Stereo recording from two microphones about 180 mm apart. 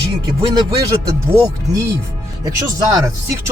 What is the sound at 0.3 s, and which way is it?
Speech, 25° right (ahead or behind).